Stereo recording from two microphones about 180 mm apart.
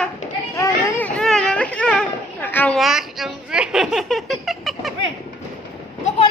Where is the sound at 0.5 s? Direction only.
15° left (ahead or behind).